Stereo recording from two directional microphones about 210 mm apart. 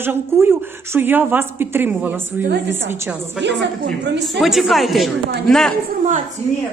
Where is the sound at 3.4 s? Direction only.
55° right (ahead or behind).